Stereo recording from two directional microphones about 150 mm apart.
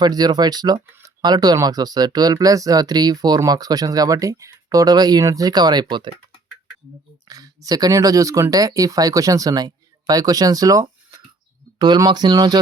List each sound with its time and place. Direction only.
0.0 s speech: 25° right (ahead or behind)
7.3 s speech: 25° right (ahead or behind)